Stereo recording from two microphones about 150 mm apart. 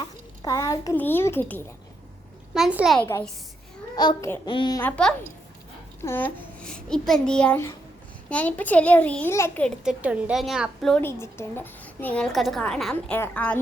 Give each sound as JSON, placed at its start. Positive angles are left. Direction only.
{"t": 0.0, "sound": "a sound", "side_deg": 20}
{"t": 0.9, "sound": "a woman's voice", "side_deg": 15}
{"t": 2.6, "sound": "a woman's voice", "side_deg": -5}
{"t": 3.0, "sound": "a woman's voice", "side_deg": 15}
{"t": 3.9, "sound": "a child's voice", "side_deg": 30}
{"t": 4.8, "sound": "a woman's voice", "side_deg": 10}
{"t": 9.6, "sound": "a woman's voice", "side_deg": -5}
{"t": 11.0, "sound": "a woman's voice", "side_deg": 15}